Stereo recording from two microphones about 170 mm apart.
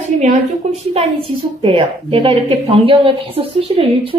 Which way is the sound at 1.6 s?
30° right (ahead or behind).